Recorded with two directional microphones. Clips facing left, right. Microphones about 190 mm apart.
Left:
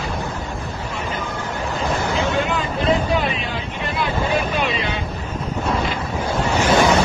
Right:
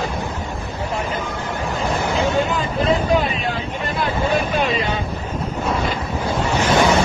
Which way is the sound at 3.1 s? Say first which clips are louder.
Right 3 dB; 45° right (ahead or behind).